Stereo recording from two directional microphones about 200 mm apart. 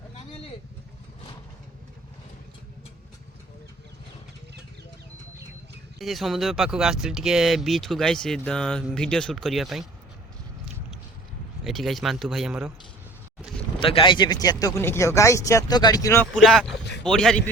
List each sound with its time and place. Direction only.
6.0 s speech: centre (ahead or behind)
11.6 s speech: centre (ahead or behind)
13.7 s speech: 25° left (ahead or behind)
16.3 s speech: centre (ahead or behind)